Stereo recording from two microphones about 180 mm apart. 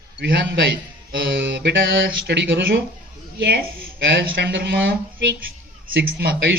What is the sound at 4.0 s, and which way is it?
Speech, 65° right (ahead or behind).